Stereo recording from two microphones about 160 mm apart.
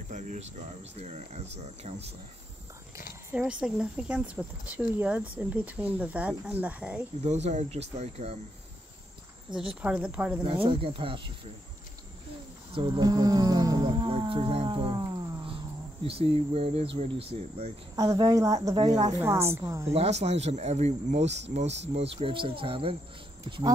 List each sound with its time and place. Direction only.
0.1 s speech: 50° right (ahead or behind)
3.3 s speech: 10° right (ahead or behind)
7.2 s speech: 45° right (ahead or behind)
9.5 s speech: 5° right (ahead or behind)
10.4 s speech: 35° right (ahead or behind)
12.7 s wild animals: 35° right (ahead or behind)
13.0 s a sound: 25° right (ahead or behind)
16.1 s speech: 40° right (ahead or behind)
18.0 s a woman's voice: 25° right (ahead or behind)
18.8 s speech: 40° right (ahead or behind)
19.0 s speech: 20° right (ahead or behind)
19.9 s speech: 40° right (ahead or behind)